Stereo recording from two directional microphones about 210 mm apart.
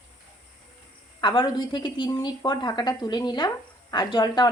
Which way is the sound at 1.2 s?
20° left (ahead or behind).